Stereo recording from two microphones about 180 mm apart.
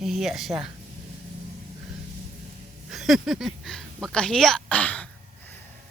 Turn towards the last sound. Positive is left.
turn(degrees=10)  # may be behind; listen again after turning